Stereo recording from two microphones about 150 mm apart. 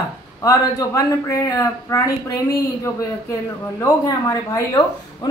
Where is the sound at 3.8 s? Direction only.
20° left (ahead or behind).